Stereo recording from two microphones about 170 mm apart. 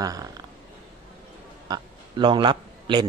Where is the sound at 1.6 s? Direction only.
25° right (ahead or behind).